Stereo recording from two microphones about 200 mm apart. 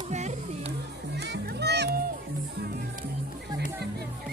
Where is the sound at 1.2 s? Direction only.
55° right (ahead or behind).